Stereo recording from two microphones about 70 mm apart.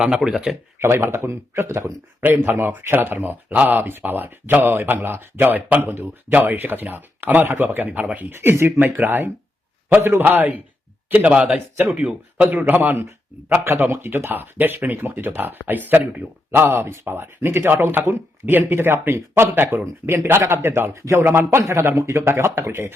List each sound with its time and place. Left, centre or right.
0.0 s speech: centre
0.8 s speech: right
16.5 s speech: right